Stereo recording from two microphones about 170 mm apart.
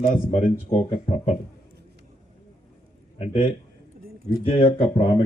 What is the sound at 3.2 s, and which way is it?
Speech, 35° left (ahead or behind).